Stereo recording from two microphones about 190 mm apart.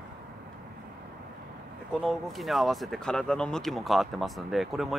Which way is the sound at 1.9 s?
Centre (ahead or behind).